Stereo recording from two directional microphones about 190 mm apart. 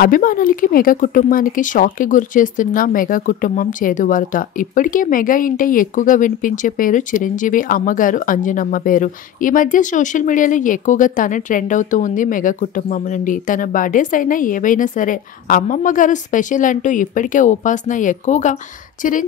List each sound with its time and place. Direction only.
0.0 s speech: 45° left (ahead or behind)